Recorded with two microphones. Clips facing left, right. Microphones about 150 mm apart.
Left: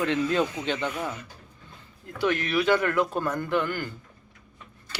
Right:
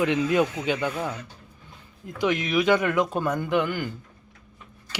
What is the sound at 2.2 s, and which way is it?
Speech, 15° right (ahead or behind).